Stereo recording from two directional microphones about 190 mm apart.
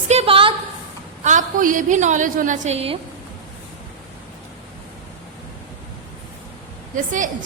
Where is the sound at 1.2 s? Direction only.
40° right (ahead or behind).